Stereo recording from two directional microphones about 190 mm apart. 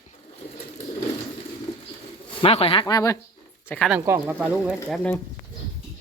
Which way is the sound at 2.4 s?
30° left (ahead or behind).